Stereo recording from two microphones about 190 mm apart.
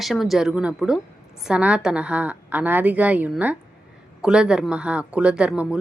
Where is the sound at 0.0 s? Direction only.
Centre (ahead or behind).